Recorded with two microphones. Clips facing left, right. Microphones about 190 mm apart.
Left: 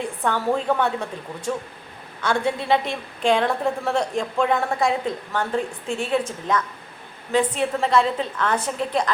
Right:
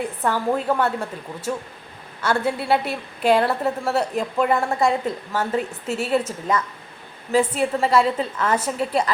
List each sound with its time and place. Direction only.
0.2 s a woman's voice: 5° right (ahead or behind)